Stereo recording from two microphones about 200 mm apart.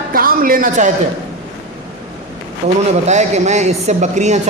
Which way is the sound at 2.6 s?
30° right (ahead or behind).